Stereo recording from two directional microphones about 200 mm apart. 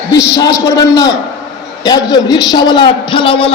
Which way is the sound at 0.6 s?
15° left (ahead or behind).